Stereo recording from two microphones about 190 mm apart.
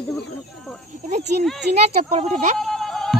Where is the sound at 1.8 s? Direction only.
35° right (ahead or behind).